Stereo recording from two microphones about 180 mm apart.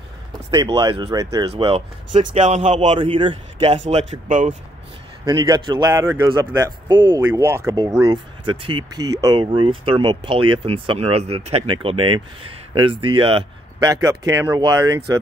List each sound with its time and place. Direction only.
0.5 s speech: 25° right (ahead or behind)
1.5 s speech: 35° right (ahead or behind)
4.1 s speech: 40° right (ahead or behind)
5.2 s speech: 20° right (ahead or behind)
7.2 s speech: 15° right (ahead or behind); by 13.5 s 30° right (ahead or behind)
13.8 s speech: 20° right (ahead or behind)